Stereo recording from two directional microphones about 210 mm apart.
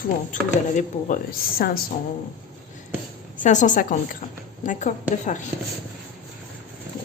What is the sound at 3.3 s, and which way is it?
Speech, 35° left (ahead or behind).